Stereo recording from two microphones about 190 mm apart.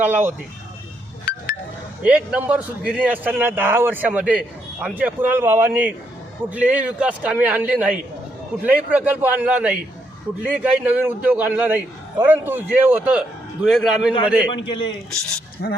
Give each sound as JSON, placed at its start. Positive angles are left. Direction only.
{"t": 0.0, "sound": "a man's voice", "side_deg": -10}
{"t": 2.0, "sound": "a man's voice", "side_deg": -5}
{"t": 14.5, "sound": "a man's voice", "side_deg": 25}
{"t": 15.6, "sound": "speech", "side_deg": 65}